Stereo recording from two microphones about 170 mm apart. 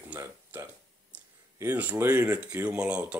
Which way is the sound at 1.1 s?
10° right (ahead or behind).